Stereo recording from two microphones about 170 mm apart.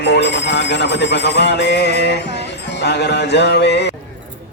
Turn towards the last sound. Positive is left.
turn(degrees=90)